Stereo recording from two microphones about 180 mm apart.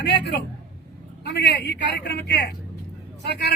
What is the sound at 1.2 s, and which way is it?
A man's voice, 70° left (ahead or behind).